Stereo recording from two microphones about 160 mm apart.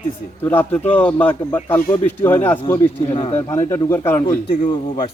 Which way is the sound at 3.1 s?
35° left (ahead or behind).